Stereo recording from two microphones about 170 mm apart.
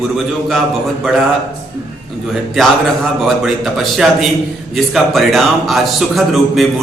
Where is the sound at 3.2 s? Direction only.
Centre (ahead or behind).